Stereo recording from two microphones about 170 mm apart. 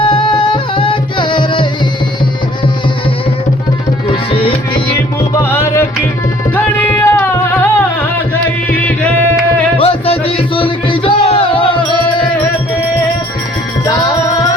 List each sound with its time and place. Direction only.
0.0 s music: 30° left (ahead or behind)
4.1 s tabla: 30° left (ahead or behind)
5.4 s music: 15° left (ahead or behind)
9.7 s music: 35° left (ahead or behind)